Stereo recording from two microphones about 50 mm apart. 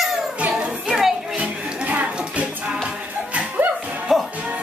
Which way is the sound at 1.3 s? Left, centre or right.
Right.